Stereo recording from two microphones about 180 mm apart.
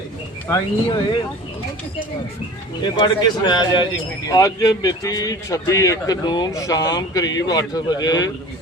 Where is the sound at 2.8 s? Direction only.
25° left (ahead or behind).